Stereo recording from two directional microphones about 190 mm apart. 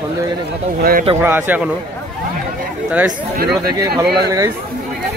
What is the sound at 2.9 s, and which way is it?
Speech, 5° right (ahead or behind).